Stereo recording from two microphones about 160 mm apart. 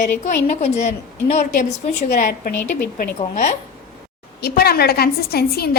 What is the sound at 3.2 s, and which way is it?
Speech, 50° left (ahead or behind).